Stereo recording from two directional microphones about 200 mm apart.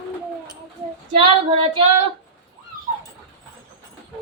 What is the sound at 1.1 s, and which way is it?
Speech, 30° right (ahead or behind).